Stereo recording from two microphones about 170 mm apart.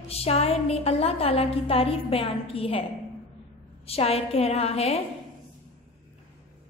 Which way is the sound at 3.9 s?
35° left (ahead or behind).